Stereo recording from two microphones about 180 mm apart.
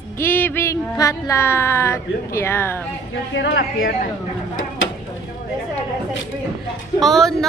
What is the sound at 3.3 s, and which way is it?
Speech, 75° left (ahead or behind).